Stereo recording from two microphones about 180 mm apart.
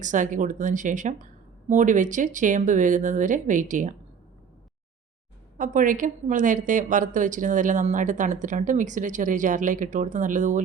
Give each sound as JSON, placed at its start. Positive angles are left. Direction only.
{"t": 0.0, "sound": "a woman's voice", "side_deg": -45}
{"t": 5.5, "sound": "a woman's voice", "side_deg": -45}